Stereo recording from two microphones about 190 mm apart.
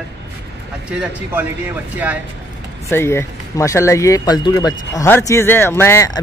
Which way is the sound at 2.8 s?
15° left (ahead or behind).